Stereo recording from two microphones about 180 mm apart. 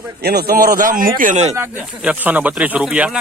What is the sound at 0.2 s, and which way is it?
Speech, 60° right (ahead or behind).